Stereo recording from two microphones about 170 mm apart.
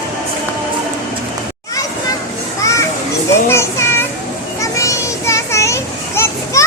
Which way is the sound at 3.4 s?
15° left (ahead or behind).